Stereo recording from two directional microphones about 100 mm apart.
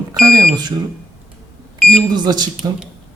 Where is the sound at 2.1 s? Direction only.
45° right (ahead or behind).